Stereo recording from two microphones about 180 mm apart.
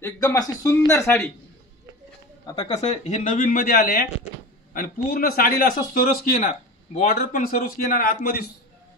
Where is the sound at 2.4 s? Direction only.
25° left (ahead or behind).